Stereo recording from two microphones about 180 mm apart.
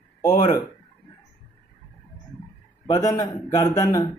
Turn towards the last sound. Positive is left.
turn(degrees=20)  # may be behind; listen again after turning